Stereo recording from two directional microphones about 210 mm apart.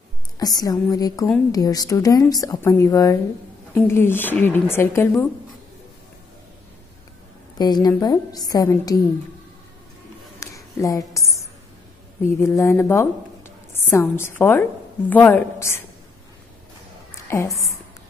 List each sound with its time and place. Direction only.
0.4 s speech: 20° left (ahead or behind)
7.5 s speech: 20° left (ahead or behind)
10.4 s a sound: 15° left (ahead or behind)
12.4 s a woman's voice: 15° left (ahead or behind)
17.3 s a woman's voice: 10° left (ahead or behind)